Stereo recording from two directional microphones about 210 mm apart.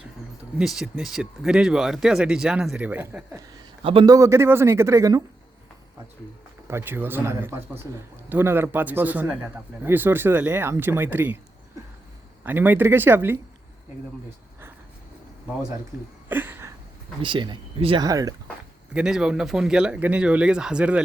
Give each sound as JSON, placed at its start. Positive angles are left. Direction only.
{"t": 0.6, "sound": "speech", "side_deg": 0}
{"t": 3.8, "sound": "a man's voice", "side_deg": -20}
{"t": 6.7, "sound": "a man's voice", "side_deg": -10}
{"t": 12.4, "sound": "a man's voice", "side_deg": -10}
{"t": 16.3, "sound": "a sound", "side_deg": -10}
{"t": 17.2, "sound": "speech", "side_deg": -20}
{"t": 18.9, "sound": "speech", "side_deg": -5}